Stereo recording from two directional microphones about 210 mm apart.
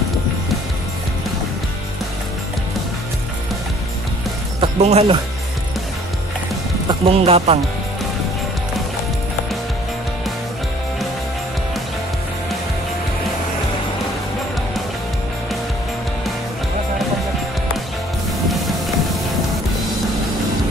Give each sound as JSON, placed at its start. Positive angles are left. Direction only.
{"t": 4.6, "sound": "speech", "side_deg": -30}
{"t": 6.9, "sound": "speech", "side_deg": -30}